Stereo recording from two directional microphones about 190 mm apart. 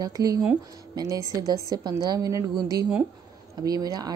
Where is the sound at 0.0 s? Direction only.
20° right (ahead or behind).